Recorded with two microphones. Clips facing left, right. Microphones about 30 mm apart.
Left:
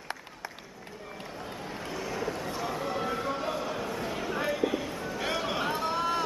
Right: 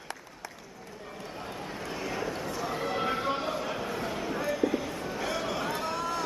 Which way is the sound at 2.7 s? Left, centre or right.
Centre.